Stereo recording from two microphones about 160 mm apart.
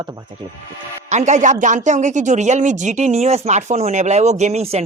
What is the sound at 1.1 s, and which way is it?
Speech, 45° right (ahead or behind).